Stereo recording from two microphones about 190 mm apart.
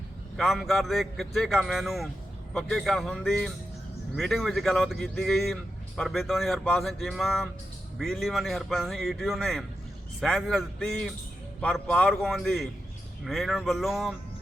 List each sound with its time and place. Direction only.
0.3 s speech: centre (ahead or behind)